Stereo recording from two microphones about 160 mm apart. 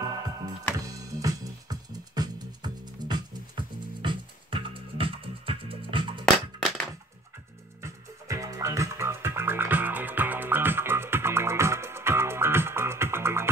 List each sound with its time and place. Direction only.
0.7 s music: 20° right (ahead or behind)
6.2 s music: 5° left (ahead or behind)
7.8 s music: 20° right (ahead or behind)